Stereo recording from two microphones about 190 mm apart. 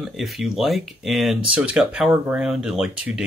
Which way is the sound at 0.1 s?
Centre (ahead or behind).